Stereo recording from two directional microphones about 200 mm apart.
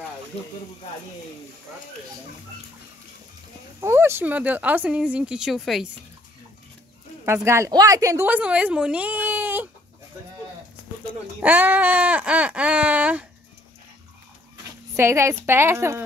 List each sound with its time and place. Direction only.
3.8 s a woman's voice: 10° right (ahead or behind)
7.2 s a woman's voice: 15° right (ahead or behind)
11.4 s a woman's voice: 10° right (ahead or behind)
15.0 s a woman's voice: 15° right (ahead or behind)